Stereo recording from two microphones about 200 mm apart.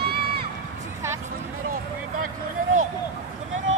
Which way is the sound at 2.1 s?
90° right.